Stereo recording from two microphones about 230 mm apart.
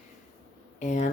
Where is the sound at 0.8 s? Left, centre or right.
Left.